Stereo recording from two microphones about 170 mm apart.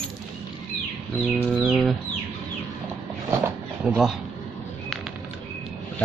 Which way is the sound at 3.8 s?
5° right (ahead or behind).